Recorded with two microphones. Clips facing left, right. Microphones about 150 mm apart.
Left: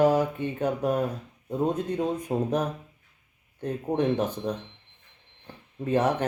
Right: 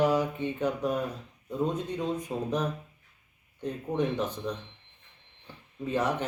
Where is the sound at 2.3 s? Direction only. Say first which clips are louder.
Left 6 dB; 55° left (ahead or behind).